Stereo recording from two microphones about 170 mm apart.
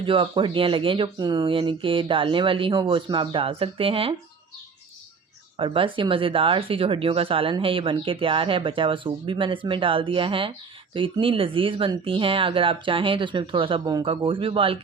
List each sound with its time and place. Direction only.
0.0 s speech: 30° right (ahead or behind)
5.5 s speech: 30° right (ahead or behind)